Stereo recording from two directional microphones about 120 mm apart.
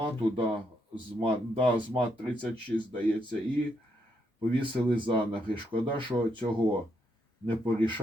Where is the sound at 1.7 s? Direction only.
45° right (ahead or behind).